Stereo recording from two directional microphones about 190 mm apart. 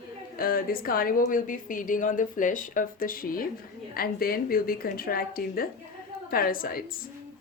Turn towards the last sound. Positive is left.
turn(degrees=50)  # may be behind; listen again after turning